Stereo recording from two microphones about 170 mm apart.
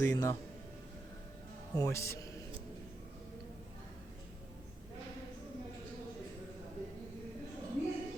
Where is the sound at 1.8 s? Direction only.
15° left (ahead or behind).